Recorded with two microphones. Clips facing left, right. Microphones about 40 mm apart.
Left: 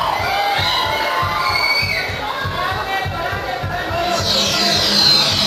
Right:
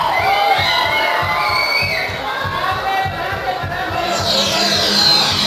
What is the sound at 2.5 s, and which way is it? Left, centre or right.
Music, centre.